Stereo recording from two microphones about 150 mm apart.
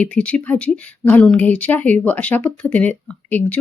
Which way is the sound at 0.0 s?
10° left (ahead or behind).